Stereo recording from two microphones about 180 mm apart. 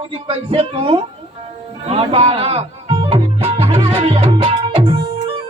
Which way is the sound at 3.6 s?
30° right (ahead or behind).